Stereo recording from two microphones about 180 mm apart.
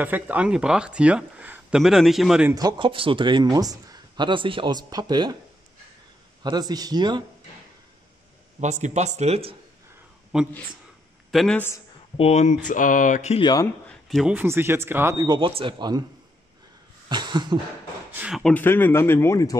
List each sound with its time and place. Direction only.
0.0 s speech: 10° right (ahead or behind)
2.5 s speech: 25° right (ahead or behind)
6.4 s speech: 20° right (ahead or behind)
8.5 s speech: 40° right (ahead or behind)
10.3 s speech: 5° right (ahead or behind)
12.2 s speech: 40° left (ahead or behind)
13.4 s speech: 25° left (ahead or behind)
14.0 s speech: centre (ahead or behind)
14.3 s speech: 10° right (ahead or behind)
17.1 s speech: 25° right (ahead or behind)
18.1 s speech: 5° right (ahead or behind)
18.4 s speech: 10° left (ahead or behind)